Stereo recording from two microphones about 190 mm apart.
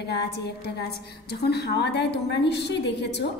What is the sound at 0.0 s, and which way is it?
A woman's voice, 60° left (ahead or behind).